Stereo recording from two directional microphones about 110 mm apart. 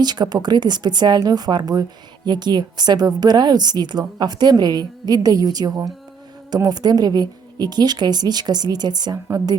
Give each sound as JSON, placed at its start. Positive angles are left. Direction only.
{"t": 0.0, "sound": "a woman's voice", "side_deg": -40}